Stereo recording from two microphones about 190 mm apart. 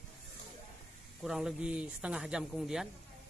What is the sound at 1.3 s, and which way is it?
Speech, 5° right (ahead or behind).